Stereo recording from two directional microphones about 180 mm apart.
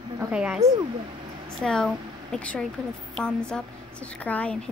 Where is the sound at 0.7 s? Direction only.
25° right (ahead or behind).